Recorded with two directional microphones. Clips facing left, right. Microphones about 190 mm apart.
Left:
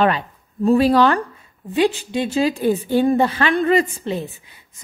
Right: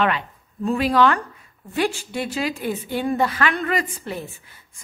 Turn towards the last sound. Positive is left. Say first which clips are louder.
# left 6 dB
turn(degrees=20)  # may be behind; listen again after turning